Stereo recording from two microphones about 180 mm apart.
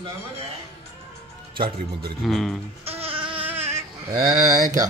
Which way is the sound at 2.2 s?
Centre (ahead or behind).